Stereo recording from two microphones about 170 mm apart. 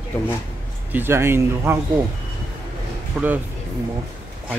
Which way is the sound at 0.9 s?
15° right (ahead or behind).